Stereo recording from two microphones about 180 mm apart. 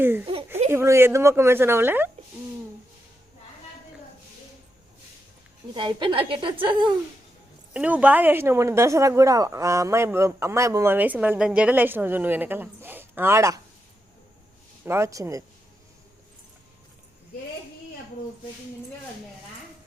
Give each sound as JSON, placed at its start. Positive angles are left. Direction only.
{"t": 0.0, "sound": "speech", "side_deg": -10}
{"t": 5.7, "sound": "a woman's voice", "side_deg": -25}
{"t": 7.7, "sound": "speech", "side_deg": -5}
{"t": 14.8, "sound": "speech", "side_deg": -15}